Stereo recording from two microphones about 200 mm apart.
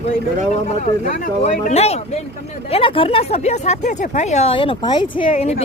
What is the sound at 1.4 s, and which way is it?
Speech, 35° left (ahead or behind).